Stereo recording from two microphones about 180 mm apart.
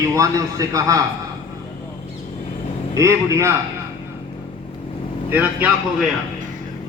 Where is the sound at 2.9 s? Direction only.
15° right (ahead or behind).